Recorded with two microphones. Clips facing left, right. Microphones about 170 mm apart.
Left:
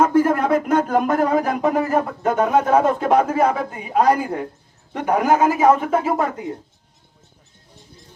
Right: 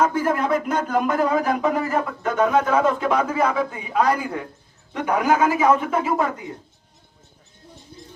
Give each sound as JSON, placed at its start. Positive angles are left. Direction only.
{"t": 0.1, "sound": "speech", "side_deg": 50}